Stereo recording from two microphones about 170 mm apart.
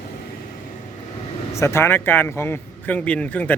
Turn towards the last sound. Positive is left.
turn(degrees=10)  # may be behind; listen again after turning